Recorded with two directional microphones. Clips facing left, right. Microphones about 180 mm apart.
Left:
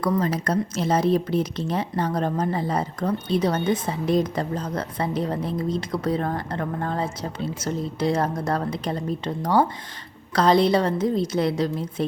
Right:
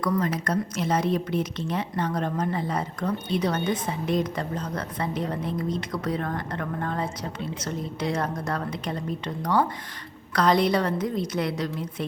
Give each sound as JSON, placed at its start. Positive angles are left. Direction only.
{"t": 0.0, "sound": "a woman's voice", "side_deg": 30}